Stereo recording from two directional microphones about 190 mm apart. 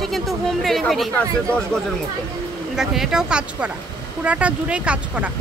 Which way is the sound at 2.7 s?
Centre (ahead or behind).